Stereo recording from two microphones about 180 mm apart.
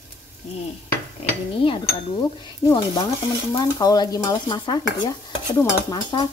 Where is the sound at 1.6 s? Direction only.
30° left (ahead or behind).